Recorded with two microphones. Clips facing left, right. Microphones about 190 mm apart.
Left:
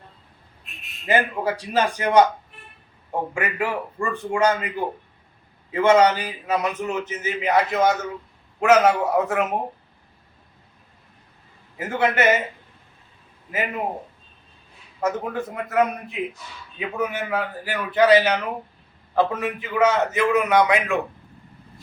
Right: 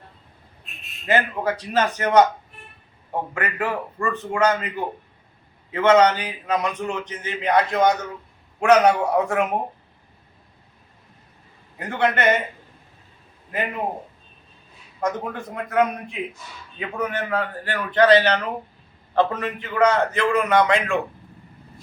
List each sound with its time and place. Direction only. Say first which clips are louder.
1.0 s a man's voice: even; 10° left (ahead or behind)
5.7 s a man's voice: even; 10° left (ahead or behind)
11.8 s a man's voice: left 1 dB; 5° left (ahead or behind)
15.0 s a man's voice: left 1 dB; 5° left (ahead or behind)